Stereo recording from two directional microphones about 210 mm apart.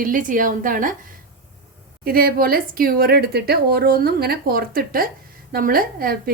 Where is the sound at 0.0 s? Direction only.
40° right (ahead or behind).